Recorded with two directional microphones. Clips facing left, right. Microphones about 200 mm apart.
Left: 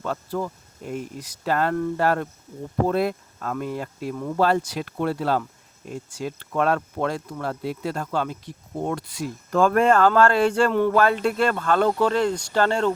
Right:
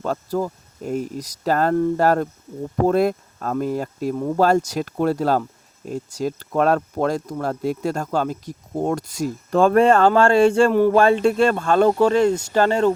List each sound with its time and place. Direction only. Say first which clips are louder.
0.0 s speech: right 4 dB; 40° right (ahead or behind)
9.6 s speech: right 3 dB; 25° right (ahead or behind)